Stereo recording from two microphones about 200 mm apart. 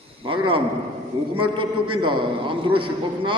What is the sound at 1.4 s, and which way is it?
A man's voice, 25° right (ahead or behind).